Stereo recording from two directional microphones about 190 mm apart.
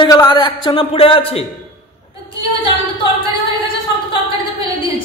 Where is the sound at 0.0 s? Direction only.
20° left (ahead or behind).